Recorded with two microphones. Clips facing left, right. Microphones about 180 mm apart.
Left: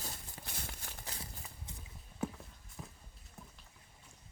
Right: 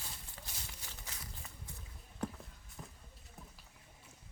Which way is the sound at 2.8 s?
5° left (ahead or behind).